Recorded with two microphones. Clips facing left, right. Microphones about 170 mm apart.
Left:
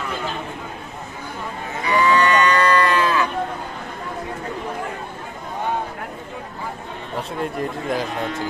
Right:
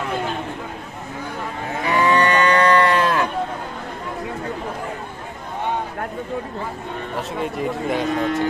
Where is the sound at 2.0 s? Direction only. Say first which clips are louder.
Even; 55° right (ahead or behind).